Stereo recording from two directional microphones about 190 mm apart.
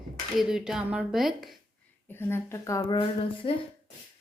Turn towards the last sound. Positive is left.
turn(degrees=30)  # may be behind; listen again after turning